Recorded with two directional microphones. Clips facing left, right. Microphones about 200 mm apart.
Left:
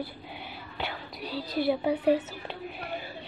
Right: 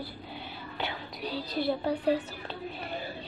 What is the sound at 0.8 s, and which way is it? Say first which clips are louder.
A woman's voice: right 1 dB; centre (ahead or behind).